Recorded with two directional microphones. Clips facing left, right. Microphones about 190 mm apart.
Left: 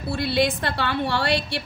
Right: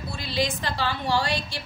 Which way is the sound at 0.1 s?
60° left (ahead or behind).